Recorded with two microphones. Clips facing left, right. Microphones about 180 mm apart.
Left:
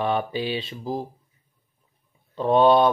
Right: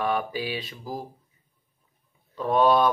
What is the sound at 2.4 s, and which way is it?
Speech, 25° left (ahead or behind).